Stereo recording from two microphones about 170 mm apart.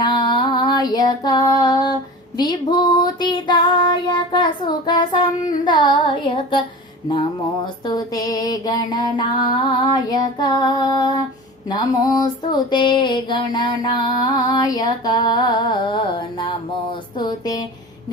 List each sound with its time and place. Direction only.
0.0 s female singing: 25° left (ahead or behind)
5.6 s music: 25° left (ahead or behind)
7.1 s a sound: 25° left (ahead or behind)